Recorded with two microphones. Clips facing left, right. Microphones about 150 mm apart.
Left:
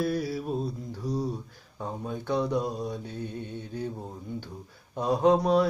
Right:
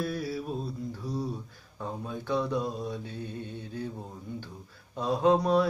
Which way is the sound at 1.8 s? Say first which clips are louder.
Left 2 dB; 15° left (ahead or behind).